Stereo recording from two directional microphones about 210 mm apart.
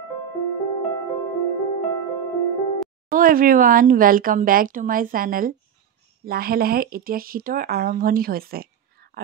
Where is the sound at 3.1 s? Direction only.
40° right (ahead or behind).